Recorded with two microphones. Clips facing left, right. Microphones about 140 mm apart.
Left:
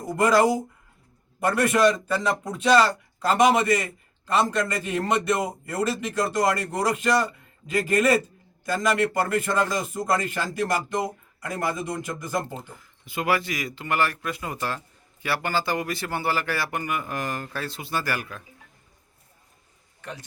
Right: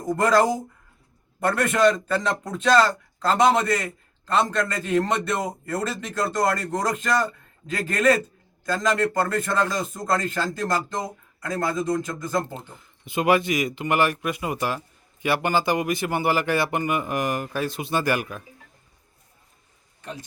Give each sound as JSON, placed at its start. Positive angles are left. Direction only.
{"t": 0.1, "sound": "a man's voice", "side_deg": 10}
{"t": 12.7, "sound": "speech", "side_deg": -20}